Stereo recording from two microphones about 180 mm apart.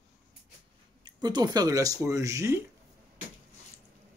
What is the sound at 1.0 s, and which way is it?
Speech, 20° right (ahead or behind).